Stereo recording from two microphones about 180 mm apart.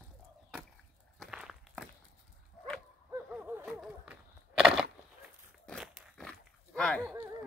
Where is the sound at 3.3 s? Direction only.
10° right (ahead or behind).